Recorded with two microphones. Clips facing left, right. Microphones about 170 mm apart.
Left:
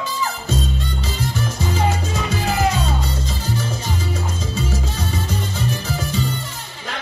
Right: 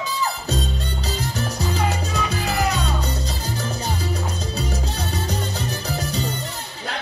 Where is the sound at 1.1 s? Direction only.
40° right (ahead or behind).